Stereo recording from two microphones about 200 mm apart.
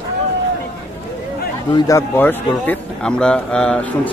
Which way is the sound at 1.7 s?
15° left (ahead or behind).